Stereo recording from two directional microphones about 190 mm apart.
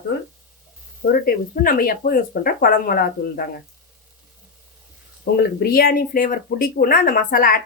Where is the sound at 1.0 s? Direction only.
50° left (ahead or behind).